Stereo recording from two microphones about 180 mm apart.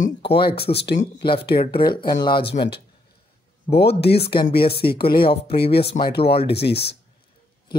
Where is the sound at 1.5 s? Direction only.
30° left (ahead or behind).